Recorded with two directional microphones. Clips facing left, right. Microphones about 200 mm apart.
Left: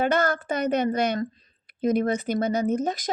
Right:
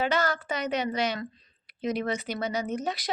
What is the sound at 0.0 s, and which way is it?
Speech, 55° left (ahead or behind).